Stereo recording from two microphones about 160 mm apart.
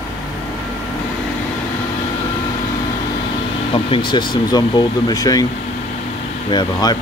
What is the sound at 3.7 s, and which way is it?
Speech, 30° left (ahead or behind).